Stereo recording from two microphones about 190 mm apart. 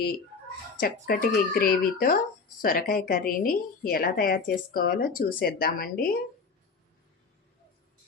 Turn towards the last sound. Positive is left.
turn(degrees=50)  # may be behind; listen again after turning